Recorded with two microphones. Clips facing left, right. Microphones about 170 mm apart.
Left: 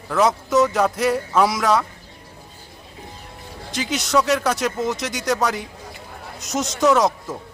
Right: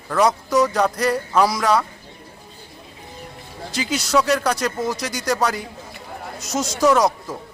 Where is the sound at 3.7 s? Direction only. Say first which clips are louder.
Even; centre (ahead or behind).